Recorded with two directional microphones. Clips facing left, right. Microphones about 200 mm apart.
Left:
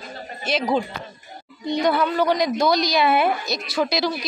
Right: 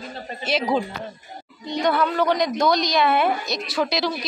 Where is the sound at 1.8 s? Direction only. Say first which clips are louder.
Even; 5° left (ahead or behind).